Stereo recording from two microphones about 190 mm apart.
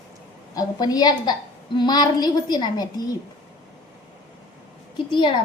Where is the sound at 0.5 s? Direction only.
20° left (ahead or behind).